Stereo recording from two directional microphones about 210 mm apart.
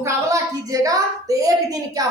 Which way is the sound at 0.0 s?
15° right (ahead or behind).